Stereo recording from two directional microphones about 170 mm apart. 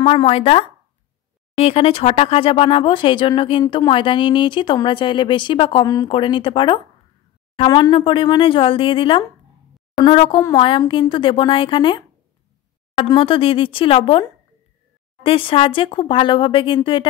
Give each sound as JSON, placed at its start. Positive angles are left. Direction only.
{"t": 0.0, "sound": "speech", "side_deg": 30}
{"t": 15.2, "sound": "speech", "side_deg": 30}